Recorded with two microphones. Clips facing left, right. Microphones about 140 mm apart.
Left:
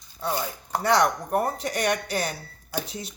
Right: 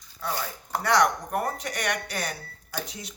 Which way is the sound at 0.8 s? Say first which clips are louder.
Left 1 dB; 25° left (ahead or behind).